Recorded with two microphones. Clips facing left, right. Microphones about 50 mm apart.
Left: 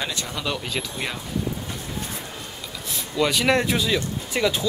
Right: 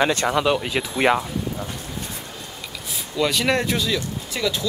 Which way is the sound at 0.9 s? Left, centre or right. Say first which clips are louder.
Right 12 dB; right.